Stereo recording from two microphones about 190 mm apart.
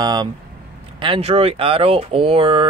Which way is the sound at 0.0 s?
20° right (ahead or behind).